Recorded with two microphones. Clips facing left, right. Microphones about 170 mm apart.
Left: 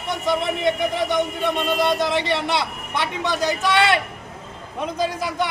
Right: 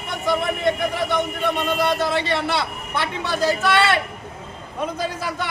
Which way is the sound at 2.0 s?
15° left (ahead or behind).